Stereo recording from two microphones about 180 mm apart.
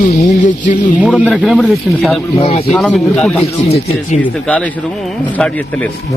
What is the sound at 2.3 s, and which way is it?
Speech, 35° left (ahead or behind).